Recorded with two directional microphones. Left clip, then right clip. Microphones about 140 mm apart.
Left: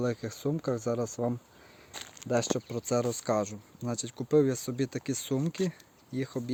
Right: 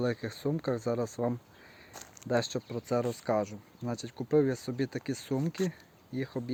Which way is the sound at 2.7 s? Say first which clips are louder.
Even; 25° left (ahead or behind).